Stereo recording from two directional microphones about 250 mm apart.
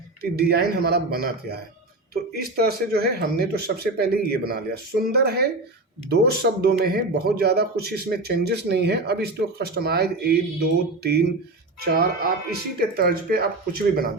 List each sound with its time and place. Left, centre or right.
0.2 s speech: right